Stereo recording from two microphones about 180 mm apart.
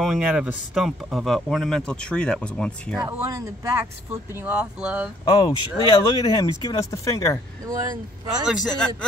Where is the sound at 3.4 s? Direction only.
15° right (ahead or behind).